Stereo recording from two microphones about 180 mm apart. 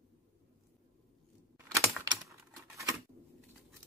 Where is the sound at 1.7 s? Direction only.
20° right (ahead or behind).